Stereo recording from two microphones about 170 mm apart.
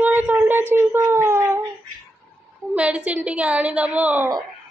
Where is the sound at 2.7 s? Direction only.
10° right (ahead or behind).